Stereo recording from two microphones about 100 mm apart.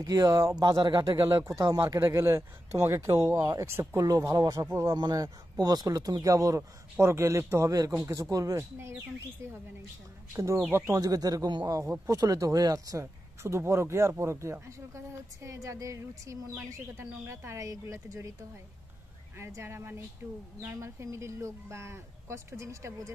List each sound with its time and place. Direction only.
0.0 s speech: 40° right (ahead or behind)
1.1 s speech: 35° right (ahead or behind)
2.0 s speech: 30° right (ahead or behind)
10.3 s speech: 30° right (ahead or behind)
19.3 s speech: 25° right (ahead or behind)